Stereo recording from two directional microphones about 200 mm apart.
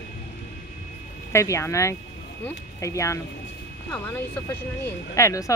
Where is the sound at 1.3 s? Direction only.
15° left (ahead or behind).